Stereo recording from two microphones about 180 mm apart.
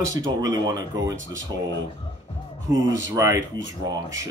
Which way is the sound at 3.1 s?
15° right (ahead or behind).